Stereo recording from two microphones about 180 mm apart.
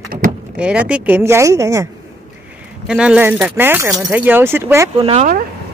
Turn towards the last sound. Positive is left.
turn(degrees=-35)  # may be behind; listen again after turning